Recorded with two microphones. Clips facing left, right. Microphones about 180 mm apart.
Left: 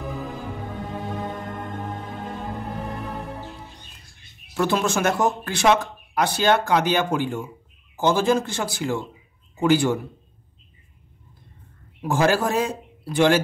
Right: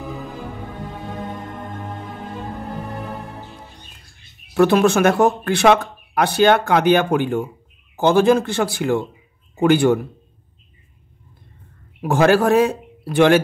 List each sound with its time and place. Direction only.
4.6 s speech: 60° right (ahead or behind)
12.0 s speech: 60° right (ahead or behind)